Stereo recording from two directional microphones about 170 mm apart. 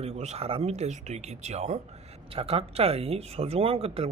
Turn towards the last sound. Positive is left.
turn(degrees=-35)  # may be behind; listen again after turning